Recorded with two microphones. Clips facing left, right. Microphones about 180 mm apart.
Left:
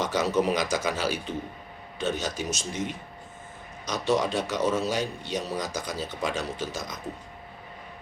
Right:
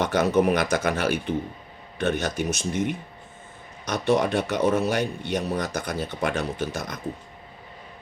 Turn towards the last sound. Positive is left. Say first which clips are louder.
# right 4 dB
turn(degrees=-60)  # may be behind; listen again after turning